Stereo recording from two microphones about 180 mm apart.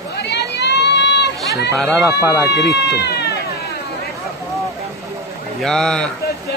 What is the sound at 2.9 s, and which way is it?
Cat, 65° left (ahead or behind).